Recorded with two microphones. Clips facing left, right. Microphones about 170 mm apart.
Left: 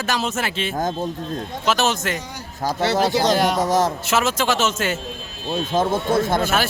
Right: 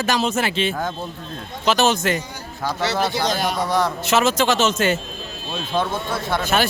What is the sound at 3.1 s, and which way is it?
Speech, 75° left (ahead or behind).